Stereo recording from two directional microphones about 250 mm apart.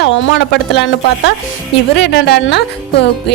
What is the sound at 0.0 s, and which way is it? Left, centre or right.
A woman's voice, left.